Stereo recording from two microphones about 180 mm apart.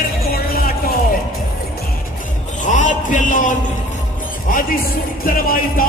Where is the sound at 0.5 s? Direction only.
55° left (ahead or behind).